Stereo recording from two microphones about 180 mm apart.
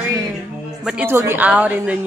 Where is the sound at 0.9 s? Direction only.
10° right (ahead or behind).